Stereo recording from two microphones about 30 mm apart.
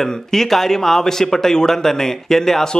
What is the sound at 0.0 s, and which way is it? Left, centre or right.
A man's voice, centre.